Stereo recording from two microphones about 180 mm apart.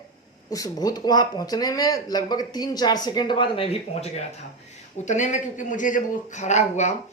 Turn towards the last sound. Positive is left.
turn(degrees=40)  # may be behind; listen again after turning